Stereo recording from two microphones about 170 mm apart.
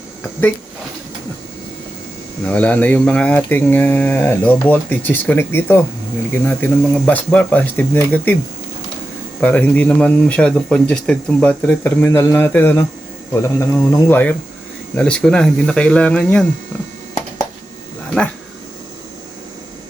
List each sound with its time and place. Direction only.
2.4 s speech: 10° left (ahead or behind)
9.4 s speech: 10° left (ahead or behind)